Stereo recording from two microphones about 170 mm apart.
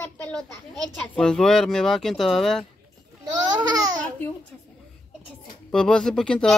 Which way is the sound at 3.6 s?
20° right (ahead or behind).